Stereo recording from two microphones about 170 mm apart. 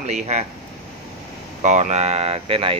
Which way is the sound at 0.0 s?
40° right (ahead or behind).